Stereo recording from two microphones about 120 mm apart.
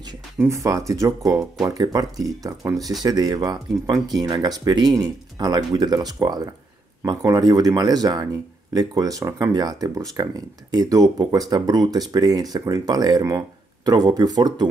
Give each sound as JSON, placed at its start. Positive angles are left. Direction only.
{"t": 0.4, "sound": "speech", "side_deg": -25}